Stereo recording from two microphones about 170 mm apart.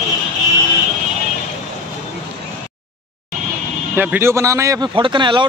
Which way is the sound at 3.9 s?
10° right (ahead or behind).